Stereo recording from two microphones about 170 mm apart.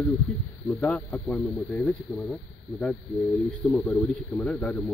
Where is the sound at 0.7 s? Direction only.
10° left (ahead or behind).